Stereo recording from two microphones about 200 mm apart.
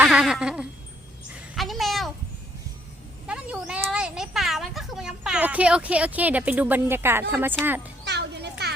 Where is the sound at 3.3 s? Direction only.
5° right (ahead or behind).